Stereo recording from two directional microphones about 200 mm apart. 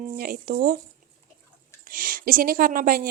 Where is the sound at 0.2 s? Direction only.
45° right (ahead or behind).